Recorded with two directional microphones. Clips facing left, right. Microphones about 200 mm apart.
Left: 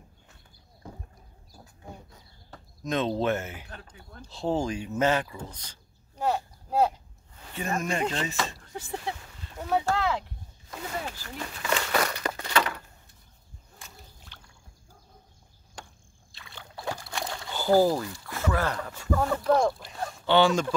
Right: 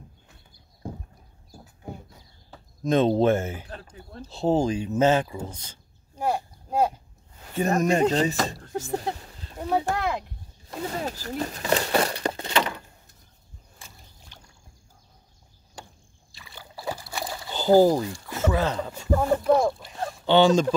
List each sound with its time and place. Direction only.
2.8 s speech: 30° right (ahead or behind)
6.1 s a sound: 10° right (ahead or behind)
7.5 s speech: 40° right (ahead or behind)
9.6 s speech: 15° right (ahead or behind)
10.7 s crumpling: 35° right (ahead or behind)
13.8 s a sound: centre (ahead or behind)
16.3 s a sound: centre (ahead or behind)
17.5 s speech: 20° right (ahead or behind)
19.4 s speech: 5° right (ahead or behind)
20.2 s speech: 20° right (ahead or behind)